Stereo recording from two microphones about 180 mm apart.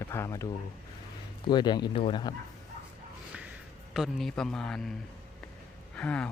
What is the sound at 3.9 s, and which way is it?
A man's voice, centre (ahead or behind).